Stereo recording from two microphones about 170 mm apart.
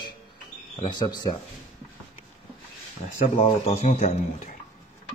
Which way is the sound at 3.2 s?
40° left (ahead or behind).